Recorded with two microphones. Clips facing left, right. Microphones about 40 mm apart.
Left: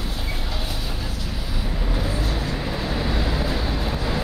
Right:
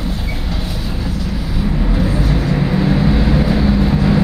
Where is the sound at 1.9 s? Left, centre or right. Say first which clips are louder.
Right 6 dB; right.